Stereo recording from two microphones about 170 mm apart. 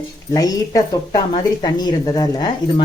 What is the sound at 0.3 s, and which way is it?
A woman's voice, 20° left (ahead or behind).